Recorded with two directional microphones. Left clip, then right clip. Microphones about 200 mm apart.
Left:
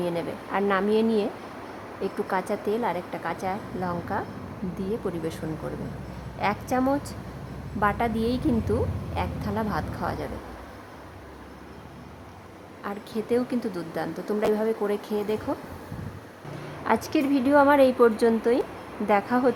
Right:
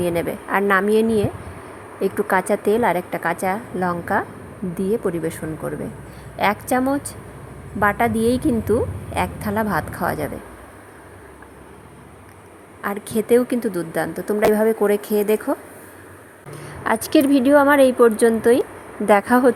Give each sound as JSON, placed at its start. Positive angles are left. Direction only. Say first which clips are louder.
{"t": 0.0, "sound": "a woman's voice", "louder": "right 7 dB", "side_deg": -25}
{"t": 6.4, "sound": "a woman's voice", "louder": "right 6 dB", "side_deg": -20}
{"t": 12.8, "sound": "a woman's voice", "louder": "right 9 dB", "side_deg": -25}
{"t": 16.8, "sound": "a woman's voice", "louder": "right 7 dB", "side_deg": -20}